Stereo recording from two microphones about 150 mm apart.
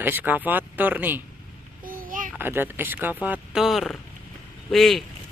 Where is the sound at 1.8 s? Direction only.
70° right (ahead or behind).